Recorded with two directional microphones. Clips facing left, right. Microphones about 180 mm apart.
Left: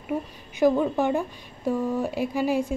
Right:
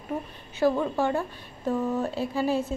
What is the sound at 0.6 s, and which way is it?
A woman's voice, 15° left (ahead or behind).